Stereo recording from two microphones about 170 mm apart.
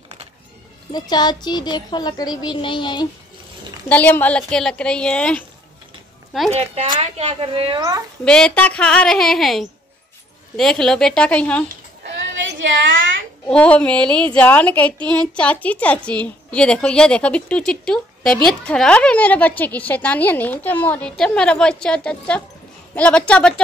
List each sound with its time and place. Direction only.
0.9 s speech: 25° left (ahead or behind)
3.9 s a woman's voice: 10° left (ahead or behind)
6.5 s speech: 40° right (ahead or behind)
8.3 s a woman's voice: 5° left (ahead or behind)
13.5 s a woman's voice: 5° left (ahead or behind)